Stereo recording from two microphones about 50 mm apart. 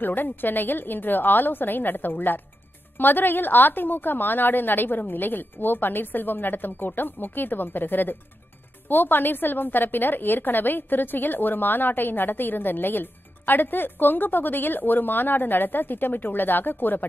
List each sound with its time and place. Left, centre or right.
0.0 s a woman's voice: left